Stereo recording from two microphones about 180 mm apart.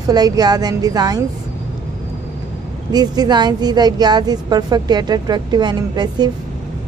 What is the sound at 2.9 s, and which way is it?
A woman's voice, 20° right (ahead or behind).